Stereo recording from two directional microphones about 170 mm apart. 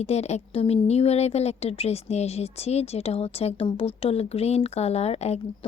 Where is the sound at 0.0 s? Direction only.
40° left (ahead or behind).